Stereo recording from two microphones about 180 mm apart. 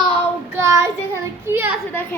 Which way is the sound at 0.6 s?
15° right (ahead or behind).